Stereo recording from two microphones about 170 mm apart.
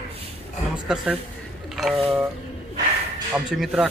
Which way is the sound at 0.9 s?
5° right (ahead or behind).